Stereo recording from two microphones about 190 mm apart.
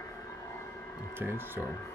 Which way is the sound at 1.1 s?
10° right (ahead or behind).